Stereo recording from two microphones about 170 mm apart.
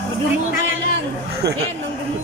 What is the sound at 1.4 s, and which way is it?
Speech, 75° right (ahead or behind).